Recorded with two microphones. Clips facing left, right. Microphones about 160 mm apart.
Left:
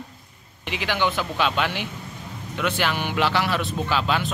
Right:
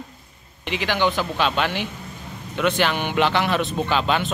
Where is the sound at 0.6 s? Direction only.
10° left (ahead or behind).